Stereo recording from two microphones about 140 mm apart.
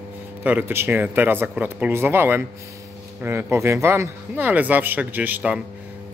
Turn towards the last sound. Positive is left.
turn(degrees=-10)  # may be behind; listen again after turning